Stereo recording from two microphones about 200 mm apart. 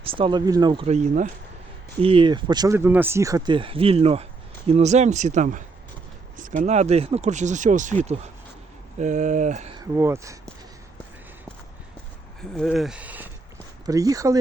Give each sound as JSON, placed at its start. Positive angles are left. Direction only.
{"t": 0.0, "sound": "speech", "side_deg": -25}
{"t": 2.0, "sound": "speech", "side_deg": -25}
{"t": 9.7, "sound": "speech", "side_deg": -15}
{"t": 12.4, "sound": "speech", "side_deg": 0}